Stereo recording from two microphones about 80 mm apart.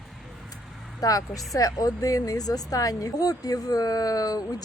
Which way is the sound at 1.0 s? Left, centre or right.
Left.